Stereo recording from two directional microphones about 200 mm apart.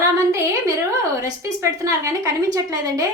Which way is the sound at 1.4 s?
15° right (ahead or behind).